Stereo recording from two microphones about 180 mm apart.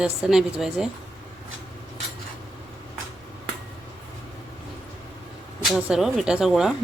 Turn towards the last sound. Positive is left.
turn(degrees=-5)  # may be behind; listen again after turning